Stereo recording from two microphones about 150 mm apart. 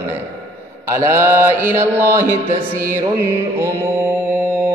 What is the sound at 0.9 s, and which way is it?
Music, 20° right (ahead or behind).